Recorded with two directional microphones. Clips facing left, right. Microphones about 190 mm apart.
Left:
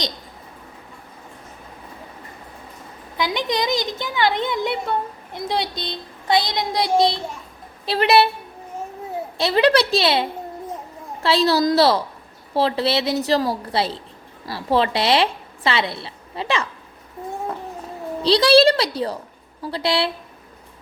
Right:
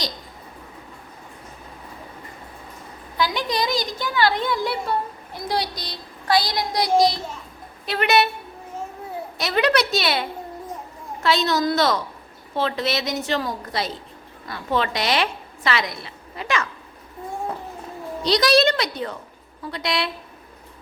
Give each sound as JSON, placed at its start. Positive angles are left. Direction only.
{"t": 3.2, "sound": "child singing", "side_deg": 20}
{"t": 7.9, "sound": "a woman's voice", "side_deg": 30}
{"t": 9.4, "sound": "child singing", "side_deg": 30}
{"t": 11.2, "sound": "a woman's voice", "side_deg": 30}
{"t": 18.2, "sound": "a woman's voice", "side_deg": 30}